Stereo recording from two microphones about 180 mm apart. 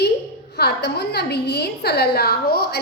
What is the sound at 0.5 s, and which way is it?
A woman's voice, 65° left (ahead or behind).